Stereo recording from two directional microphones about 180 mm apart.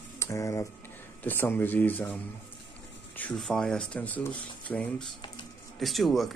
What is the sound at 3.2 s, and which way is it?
Speech, 5° left (ahead or behind).